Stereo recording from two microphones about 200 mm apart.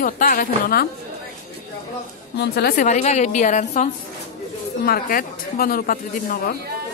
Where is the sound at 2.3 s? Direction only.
55° left (ahead or behind).